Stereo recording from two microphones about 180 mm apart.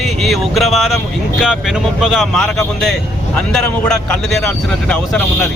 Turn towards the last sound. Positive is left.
turn(degrees=10)  # may be behind; listen again after turning